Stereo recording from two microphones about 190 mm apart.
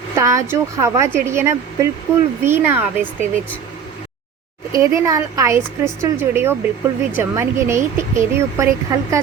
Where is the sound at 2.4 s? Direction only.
10° right (ahead or behind).